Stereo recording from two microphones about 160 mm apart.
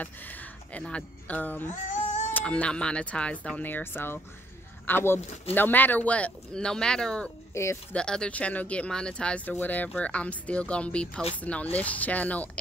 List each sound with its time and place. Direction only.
0.0 s speech: 10° left (ahead or behind)
1.9 s cat: 45° left (ahead or behind)
2.3 s speech: 5° left (ahead or behind)
7.5 s speech: 15° left (ahead or behind)
7.9 s speech: 5° left (ahead or behind)